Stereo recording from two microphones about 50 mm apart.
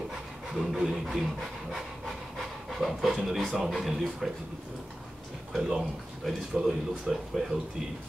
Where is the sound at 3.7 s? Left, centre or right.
Centre.